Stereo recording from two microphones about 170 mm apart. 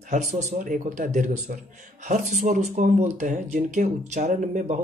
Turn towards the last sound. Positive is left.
turn(degrees=-50)  # may be behind; listen again after turning